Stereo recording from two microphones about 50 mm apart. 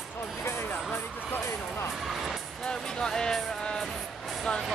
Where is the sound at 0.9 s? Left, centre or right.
Left.